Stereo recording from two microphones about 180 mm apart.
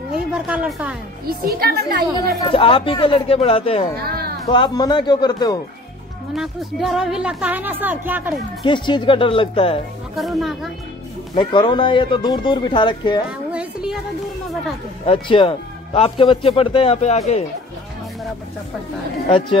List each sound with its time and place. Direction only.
0.1 s a woman's voice: 5° right (ahead or behind)
1.2 s a woman's voice: 55° right (ahead or behind)
2.4 s a man's voice: 30° left (ahead or behind)
4.1 s music: 60° right (ahead or behind)
4.5 s speech: 25° left (ahead or behind)
6.3 s speech: centre (ahead or behind)
8.6 s speech: 25° left (ahead or behind)
10.1 s speech: centre (ahead or behind)
11.3 s speech: 25° left (ahead or behind)
13.5 s music: 5° right (ahead or behind)
15.0 s a man's voice: 30° left (ahead or behind)